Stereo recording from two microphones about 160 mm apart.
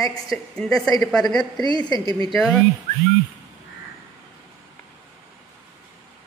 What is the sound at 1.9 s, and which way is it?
Speech, 25° left (ahead or behind).